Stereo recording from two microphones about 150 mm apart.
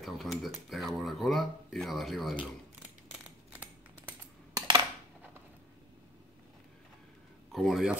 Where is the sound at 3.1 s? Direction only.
10° right (ahead or behind).